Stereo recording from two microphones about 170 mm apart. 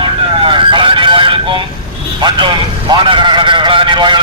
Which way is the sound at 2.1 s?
25° right (ahead or behind).